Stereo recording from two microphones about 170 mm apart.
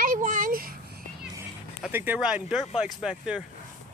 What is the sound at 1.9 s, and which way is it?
Speech, 10° right (ahead or behind).